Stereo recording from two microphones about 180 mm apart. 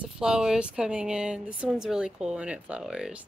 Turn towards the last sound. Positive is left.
turn(degrees=-5)  # may be behind; listen again after turning